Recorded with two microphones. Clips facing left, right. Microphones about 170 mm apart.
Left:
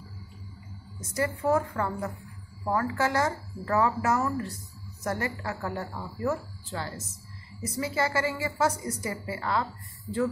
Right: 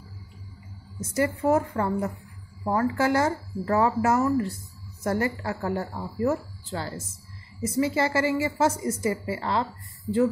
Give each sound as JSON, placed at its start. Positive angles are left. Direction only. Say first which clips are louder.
{"t": 1.0, "sound": "a woman's voice", "louder": "right 4 dB", "side_deg": -25}